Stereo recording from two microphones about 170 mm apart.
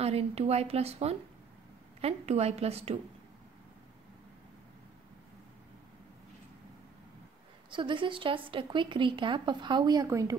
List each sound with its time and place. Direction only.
0.0 s a woman's voice: 35° right (ahead or behind)
7.7 s speech: 30° right (ahead or behind)